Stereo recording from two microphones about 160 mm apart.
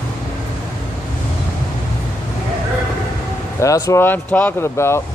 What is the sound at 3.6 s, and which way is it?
Speech, 20° left (ahead or behind).